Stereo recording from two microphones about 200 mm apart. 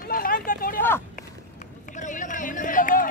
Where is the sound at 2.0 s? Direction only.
40° left (ahead or behind).